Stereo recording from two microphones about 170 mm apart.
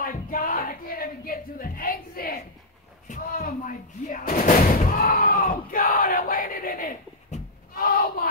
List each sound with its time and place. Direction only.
0.0 s music: 55° left (ahead or behind)
3.1 s speech: 55° left (ahead or behind)
7.7 s a sound: 60° left (ahead or behind)